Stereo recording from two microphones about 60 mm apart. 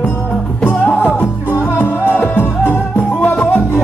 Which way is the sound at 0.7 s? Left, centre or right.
Left.